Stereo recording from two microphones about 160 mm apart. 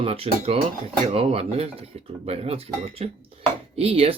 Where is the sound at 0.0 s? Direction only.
35° right (ahead or behind).